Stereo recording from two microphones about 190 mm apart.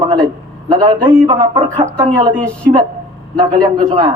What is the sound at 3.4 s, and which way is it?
Speech, 20° right (ahead or behind).